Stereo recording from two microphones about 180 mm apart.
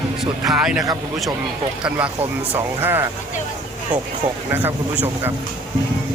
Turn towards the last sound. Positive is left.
turn(degrees=-10)  # may be behind; listen again after turning